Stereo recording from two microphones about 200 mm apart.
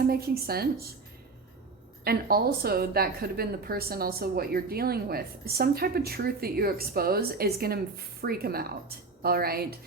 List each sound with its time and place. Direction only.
0.1 s a woman's voice: 50° right (ahead or behind)
2.0 s a woman's voice: 50° right (ahead or behind)